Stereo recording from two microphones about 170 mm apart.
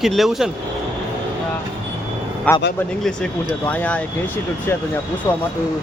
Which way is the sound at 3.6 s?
10° left (ahead or behind).